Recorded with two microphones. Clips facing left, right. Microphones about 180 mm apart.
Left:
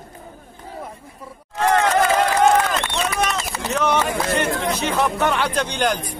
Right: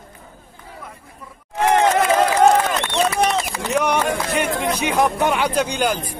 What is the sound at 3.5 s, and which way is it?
Run, 10° right (ahead or behind).